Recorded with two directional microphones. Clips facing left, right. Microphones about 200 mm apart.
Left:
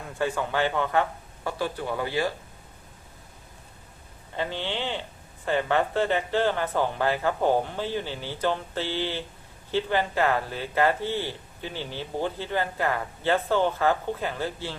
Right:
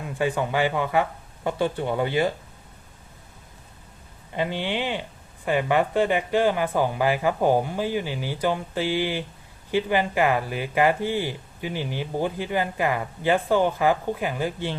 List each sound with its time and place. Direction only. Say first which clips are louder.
0.2 s speech: right 3 dB; 15° right (ahead or behind)
1.5 s speech: right 5 dB; 25° right (ahead or behind)
4.4 s speech: right 4 dB; 15° right (ahead or behind)